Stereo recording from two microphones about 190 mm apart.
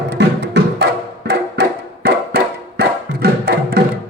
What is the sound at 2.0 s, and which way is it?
Music, 60° right (ahead or behind).